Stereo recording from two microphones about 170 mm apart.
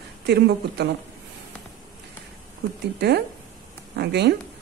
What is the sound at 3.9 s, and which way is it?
Speech, 75° right (ahead or behind).